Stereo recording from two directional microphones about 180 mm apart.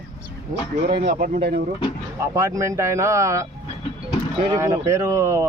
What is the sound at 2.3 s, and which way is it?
Speech, 20° right (ahead or behind).